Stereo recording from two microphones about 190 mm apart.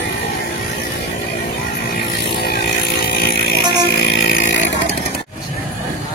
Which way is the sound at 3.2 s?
55° left (ahead or behind).